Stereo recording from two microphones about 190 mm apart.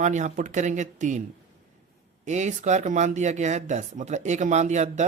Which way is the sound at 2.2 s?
40° right (ahead or behind).